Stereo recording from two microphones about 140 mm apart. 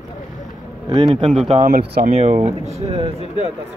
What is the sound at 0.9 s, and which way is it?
Speech, 40° right (ahead or behind).